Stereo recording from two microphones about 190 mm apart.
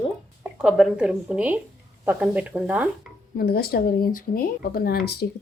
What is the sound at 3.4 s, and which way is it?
Speech, 55° left (ahead or behind).